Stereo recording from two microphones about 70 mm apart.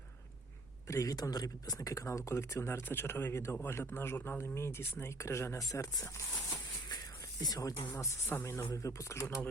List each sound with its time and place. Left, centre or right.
0.9 s a man's voice: left
7.4 s speech: left
8.3 s a man's voice: left
8.5 s speech: left